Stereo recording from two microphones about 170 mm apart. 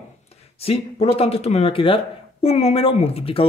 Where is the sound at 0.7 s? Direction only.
35° left (ahead or behind).